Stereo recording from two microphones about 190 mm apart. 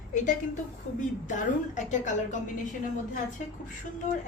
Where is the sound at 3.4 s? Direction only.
40° left (ahead or behind).